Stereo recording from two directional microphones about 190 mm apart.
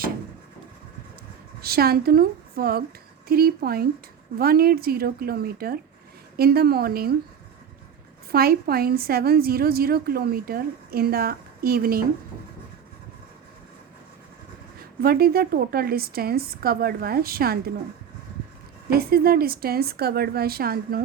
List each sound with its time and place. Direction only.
1.6 s a woman's voice: 55° right (ahead or behind)
8.3 s a woman's voice: 55° right (ahead or behind)
15.0 s a woman's voice: 55° right (ahead or behind)
18.9 s a woman's voice: 55° right (ahead or behind)